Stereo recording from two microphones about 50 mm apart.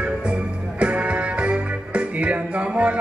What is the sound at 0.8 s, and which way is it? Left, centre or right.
Music, right.